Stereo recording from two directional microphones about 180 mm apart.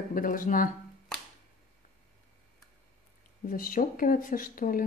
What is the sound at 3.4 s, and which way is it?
A woman's voice, 50° left (ahead or behind).